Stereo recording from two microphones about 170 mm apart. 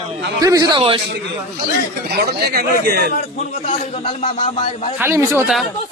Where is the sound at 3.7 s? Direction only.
40° left (ahead or behind).